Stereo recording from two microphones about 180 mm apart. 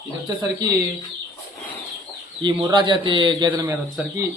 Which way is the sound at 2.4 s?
25° right (ahead or behind).